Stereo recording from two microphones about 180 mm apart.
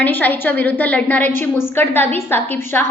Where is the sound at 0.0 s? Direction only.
10° left (ahead or behind).